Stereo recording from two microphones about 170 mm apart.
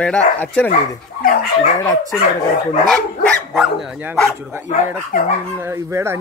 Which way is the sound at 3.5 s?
Centre (ahead or behind).